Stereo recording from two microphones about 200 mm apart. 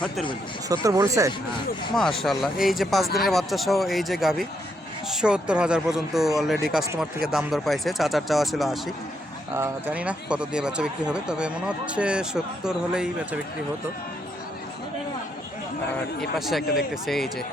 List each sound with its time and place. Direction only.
0.7 s speech: 15° right (ahead or behind)
2.0 s speech: centre (ahead or behind)
16.4 s speech: centre (ahead or behind)